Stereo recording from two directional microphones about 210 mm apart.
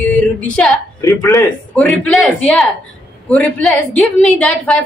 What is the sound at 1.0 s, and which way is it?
Speech, 15° left (ahead or behind).